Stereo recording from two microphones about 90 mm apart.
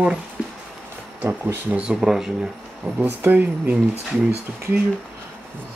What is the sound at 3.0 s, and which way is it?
Speech, 20° right (ahead or behind).